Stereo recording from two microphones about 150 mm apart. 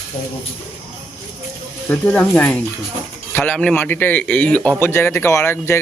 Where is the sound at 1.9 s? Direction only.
10° left (ahead or behind).